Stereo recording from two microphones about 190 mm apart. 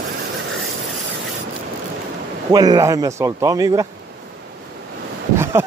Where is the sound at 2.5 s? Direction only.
20° right (ahead or behind).